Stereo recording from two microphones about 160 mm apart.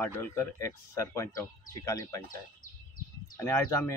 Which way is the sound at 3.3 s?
15° left (ahead or behind).